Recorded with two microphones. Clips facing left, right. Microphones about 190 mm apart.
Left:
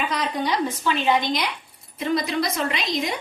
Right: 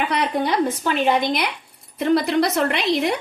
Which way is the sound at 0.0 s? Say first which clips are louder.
Right 4 dB; 65° right (ahead or behind).